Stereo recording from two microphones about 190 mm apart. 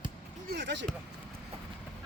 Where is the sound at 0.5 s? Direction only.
65° right (ahead or behind).